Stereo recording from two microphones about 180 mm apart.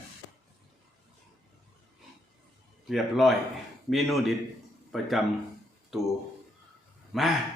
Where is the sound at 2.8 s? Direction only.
Centre (ahead or behind).